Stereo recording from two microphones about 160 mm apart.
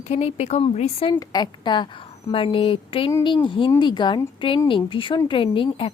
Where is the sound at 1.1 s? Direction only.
25° left (ahead or behind).